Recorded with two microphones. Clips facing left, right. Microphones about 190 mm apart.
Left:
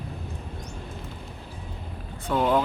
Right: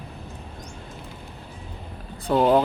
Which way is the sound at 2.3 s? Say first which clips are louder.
Right 4 dB; 35° right (ahead or behind).